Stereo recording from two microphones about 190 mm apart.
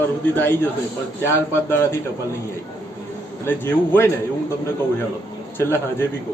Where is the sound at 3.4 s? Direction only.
10° left (ahead or behind).